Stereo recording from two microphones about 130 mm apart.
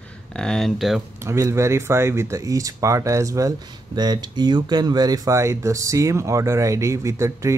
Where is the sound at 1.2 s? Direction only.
20° right (ahead or behind).